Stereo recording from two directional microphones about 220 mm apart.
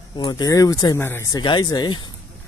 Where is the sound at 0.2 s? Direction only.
15° left (ahead or behind).